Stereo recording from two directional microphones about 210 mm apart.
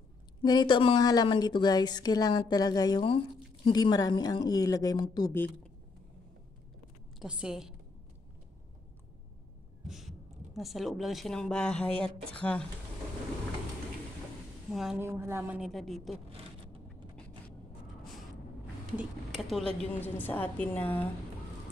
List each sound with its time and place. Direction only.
0.4 s a woman's voice: 20° left (ahead or behind)
7.2 s a woman's voice: 5° right (ahead or behind)
9.8 s a woman's voice: centre (ahead or behind)
14.7 s a woman's voice: centre (ahead or behind)
18.9 s a woman's voice: centre (ahead or behind)
20.0 s a woman's voice: 10° left (ahead or behind)